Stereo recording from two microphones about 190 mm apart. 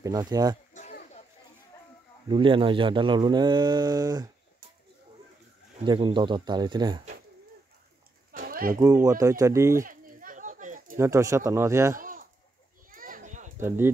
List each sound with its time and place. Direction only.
0.0 s speech: 20° right (ahead or behind)
2.2 s speech: 25° right (ahead or behind)
5.9 s speech: 25° right (ahead or behind)
8.3 s a sound: 50° right (ahead or behind)
8.7 s speech: 15° right (ahead or behind)
9.8 s a sound: 45° right (ahead or behind)
11.0 s speech: 15° right (ahead or behind)
12.0 s chicken: 45° right (ahead or behind)
12.9 s children playing: 45° right (ahead or behind)
13.6 s speech: 15° right (ahead or behind)